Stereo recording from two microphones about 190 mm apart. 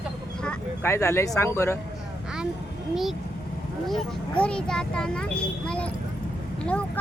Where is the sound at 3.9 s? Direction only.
5° left (ahead or behind).